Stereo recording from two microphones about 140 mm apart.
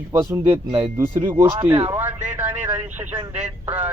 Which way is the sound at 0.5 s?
40° right (ahead or behind).